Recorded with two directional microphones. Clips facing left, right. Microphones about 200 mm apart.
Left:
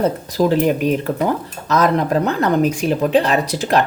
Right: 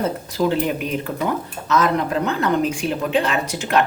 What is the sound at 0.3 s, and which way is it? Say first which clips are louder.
Speech: left 4 dB; 40° left (ahead or behind).